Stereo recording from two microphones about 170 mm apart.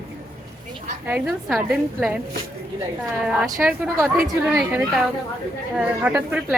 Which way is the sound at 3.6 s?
10° right (ahead or behind).